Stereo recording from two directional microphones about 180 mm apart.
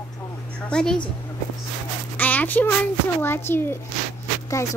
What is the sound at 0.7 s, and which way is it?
Speech, 5° left (ahead or behind).